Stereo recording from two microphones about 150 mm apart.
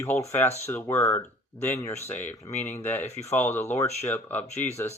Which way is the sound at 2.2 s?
50° left (ahead or behind).